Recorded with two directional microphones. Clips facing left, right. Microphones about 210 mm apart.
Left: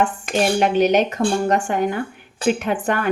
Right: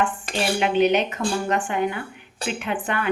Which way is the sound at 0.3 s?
40° left (ahead or behind).